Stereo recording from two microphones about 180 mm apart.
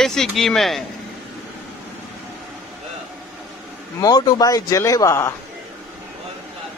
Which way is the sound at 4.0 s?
20° left (ahead or behind).